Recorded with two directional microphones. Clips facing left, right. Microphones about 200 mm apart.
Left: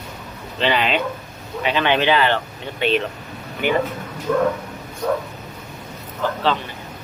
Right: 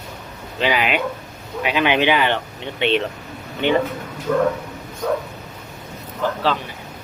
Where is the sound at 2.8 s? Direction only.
25° right (ahead or behind).